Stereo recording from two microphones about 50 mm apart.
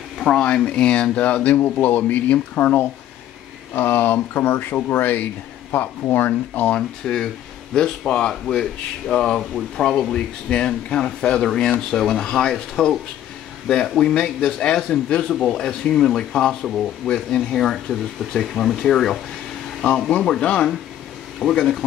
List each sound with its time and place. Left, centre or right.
0.7 s speech: left
7.0 s speech: centre
17.1 s speech: centre
20.1 s speech: centre
21.4 s speech: centre